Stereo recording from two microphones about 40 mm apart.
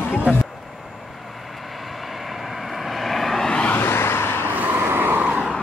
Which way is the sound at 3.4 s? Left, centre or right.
Left.